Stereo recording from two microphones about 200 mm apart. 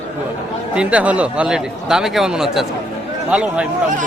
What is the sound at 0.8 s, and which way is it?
Speech, 5° right (ahead or behind).